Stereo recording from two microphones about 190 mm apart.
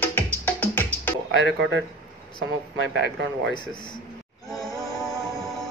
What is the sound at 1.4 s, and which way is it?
Speech, 70° right (ahead or behind).